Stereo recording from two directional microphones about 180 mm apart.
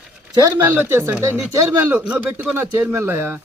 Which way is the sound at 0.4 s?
15° right (ahead or behind).